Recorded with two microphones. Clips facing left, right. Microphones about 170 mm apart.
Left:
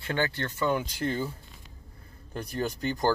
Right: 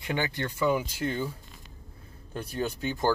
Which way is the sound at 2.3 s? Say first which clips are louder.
Even; centre (ahead or behind).